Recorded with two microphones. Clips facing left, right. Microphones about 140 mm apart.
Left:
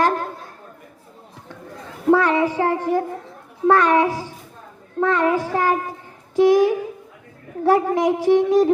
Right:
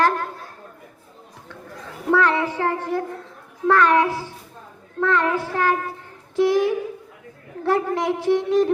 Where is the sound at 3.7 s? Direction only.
15° left (ahead or behind).